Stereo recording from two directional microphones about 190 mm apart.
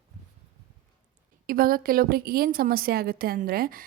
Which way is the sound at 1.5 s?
50° right (ahead or behind).